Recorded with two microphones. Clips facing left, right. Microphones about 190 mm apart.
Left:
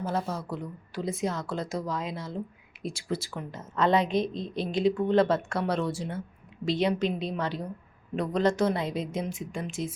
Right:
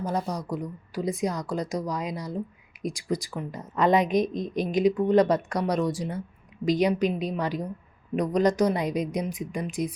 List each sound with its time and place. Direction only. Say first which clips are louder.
0.0 s speech: right 2 dB; 15° right (ahead or behind)
3.2 s speech: right 4 dB; centre (ahead or behind)
3.6 s speech: right 2 dB; 15° right (ahead or behind)